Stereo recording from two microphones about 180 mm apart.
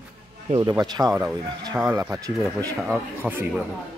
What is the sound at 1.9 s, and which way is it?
Speech, 20° right (ahead or behind).